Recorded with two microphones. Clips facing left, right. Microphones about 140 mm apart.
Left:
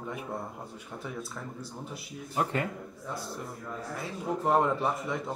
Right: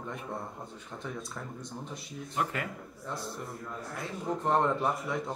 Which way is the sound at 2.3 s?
35° left (ahead or behind).